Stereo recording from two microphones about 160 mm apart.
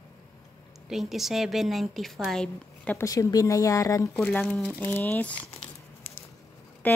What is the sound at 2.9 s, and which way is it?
Speech, 20° left (ahead or behind).